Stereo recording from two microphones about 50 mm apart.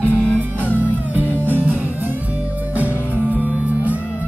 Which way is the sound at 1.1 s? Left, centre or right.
Right.